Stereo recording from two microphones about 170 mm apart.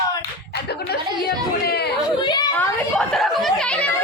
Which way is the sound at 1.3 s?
70° left (ahead or behind).